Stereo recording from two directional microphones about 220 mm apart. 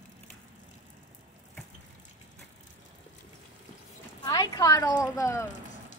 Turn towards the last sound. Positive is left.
turn(degrees=15)  # may be behind; listen again after turning